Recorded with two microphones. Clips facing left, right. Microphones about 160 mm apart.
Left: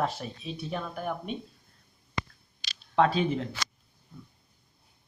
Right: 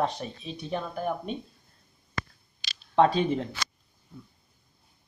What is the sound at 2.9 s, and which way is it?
Speech, 25° right (ahead or behind).